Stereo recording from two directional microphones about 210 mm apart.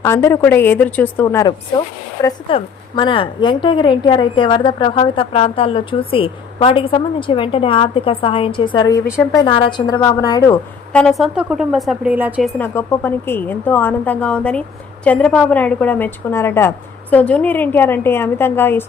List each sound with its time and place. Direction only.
0.0 s a woman's voice: 15° left (ahead or behind)
11.0 s speech: centre (ahead or behind)
12.5 s a woman's voice: 10° left (ahead or behind)